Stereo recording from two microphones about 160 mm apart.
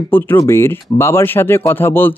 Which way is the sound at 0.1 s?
15° left (ahead or behind).